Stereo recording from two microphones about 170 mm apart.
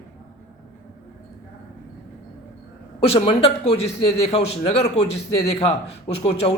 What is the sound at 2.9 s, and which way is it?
A man's voice, 35° left (ahead or behind).